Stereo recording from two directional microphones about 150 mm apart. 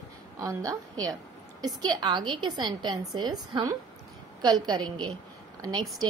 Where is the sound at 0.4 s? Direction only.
20° right (ahead or behind).